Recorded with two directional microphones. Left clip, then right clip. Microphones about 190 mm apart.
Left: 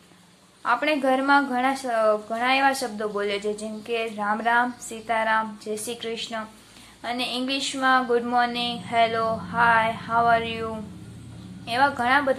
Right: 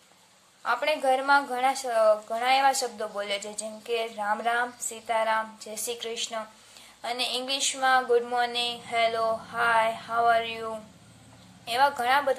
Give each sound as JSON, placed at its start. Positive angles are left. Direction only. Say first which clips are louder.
{"t": 0.7, "sound": "a woman's voice", "louder": "left 3 dB", "side_deg": -15}